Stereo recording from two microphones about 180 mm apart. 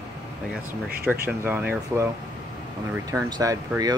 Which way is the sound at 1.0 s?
10° right (ahead or behind).